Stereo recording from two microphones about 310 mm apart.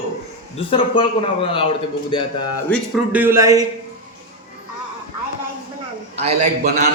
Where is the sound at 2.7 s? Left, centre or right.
Centre.